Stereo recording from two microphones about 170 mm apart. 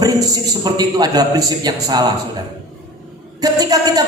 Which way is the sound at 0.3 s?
20° right (ahead or behind).